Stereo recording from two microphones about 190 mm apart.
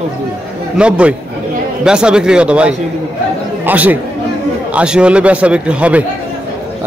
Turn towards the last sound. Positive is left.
turn(degrees=-5)  # may be behind; listen again after turning